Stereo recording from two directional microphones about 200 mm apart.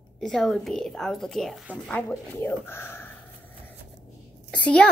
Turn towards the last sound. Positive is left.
turn(degrees=5)  # may be behind; listen again after turning